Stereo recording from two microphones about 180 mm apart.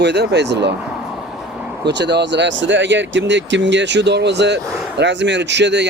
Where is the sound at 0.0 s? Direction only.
70° right (ahead or behind).